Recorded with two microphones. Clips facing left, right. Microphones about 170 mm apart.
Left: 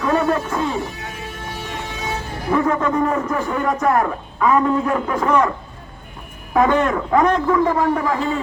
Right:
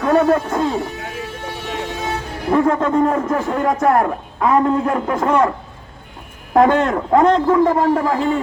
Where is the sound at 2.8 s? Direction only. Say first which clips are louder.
Right 3 dB; 30° right (ahead or behind).